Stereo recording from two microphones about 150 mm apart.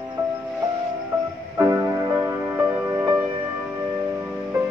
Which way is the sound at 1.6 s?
15° right (ahead or behind).